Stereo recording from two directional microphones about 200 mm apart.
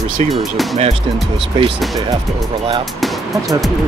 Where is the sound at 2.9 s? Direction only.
Centre (ahead or behind).